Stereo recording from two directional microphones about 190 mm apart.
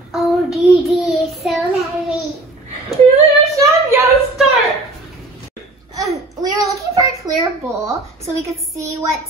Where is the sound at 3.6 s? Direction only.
15° right (ahead or behind).